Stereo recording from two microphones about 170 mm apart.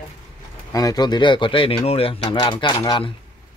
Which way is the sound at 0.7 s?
20° left (ahead or behind).